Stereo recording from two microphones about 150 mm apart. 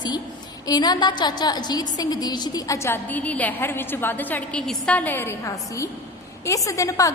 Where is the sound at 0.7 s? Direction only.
30° left (ahead or behind).